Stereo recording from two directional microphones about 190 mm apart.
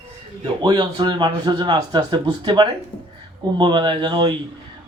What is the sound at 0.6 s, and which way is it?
A man's voice, 25° right (ahead or behind).